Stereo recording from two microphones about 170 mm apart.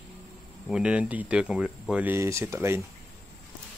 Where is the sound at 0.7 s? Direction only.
5° right (ahead or behind).